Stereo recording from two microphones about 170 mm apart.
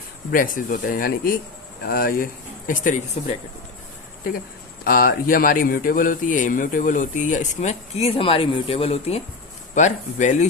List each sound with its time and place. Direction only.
0.3 s speech: 55° left (ahead or behind)
4.8 s speech: 60° left (ahead or behind)